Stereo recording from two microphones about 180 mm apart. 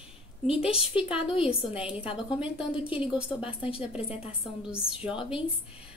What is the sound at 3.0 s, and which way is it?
Speech, 5° right (ahead or behind).